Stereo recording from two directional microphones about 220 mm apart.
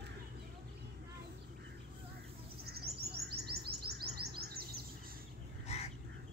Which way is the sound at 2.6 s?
45° right (ahead or behind).